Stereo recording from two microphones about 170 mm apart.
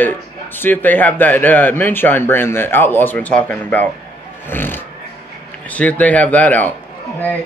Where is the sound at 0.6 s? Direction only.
10° left (ahead or behind).